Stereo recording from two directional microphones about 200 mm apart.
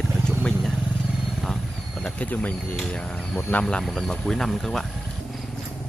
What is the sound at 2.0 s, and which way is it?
Speech, 5° left (ahead or behind).